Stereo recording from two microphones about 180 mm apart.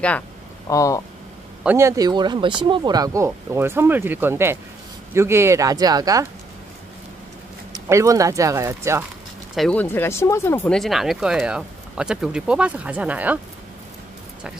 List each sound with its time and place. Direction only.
0.7 s speech: 20° left (ahead or behind)
1.6 s speech: 10° right (ahead or behind)
7.7 s speech: 15° right (ahead or behind)
9.6 s speech: 10° left (ahead or behind)
10.8 s speech: centre (ahead or behind)